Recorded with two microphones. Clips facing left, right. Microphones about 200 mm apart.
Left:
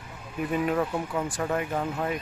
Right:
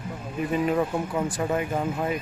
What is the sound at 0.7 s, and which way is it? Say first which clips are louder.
Speech: right 2 dB; 10° right (ahead or behind).